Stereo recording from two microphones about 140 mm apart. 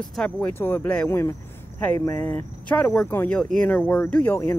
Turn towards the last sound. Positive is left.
turn(degrees=15)  # may be behind; listen again after turning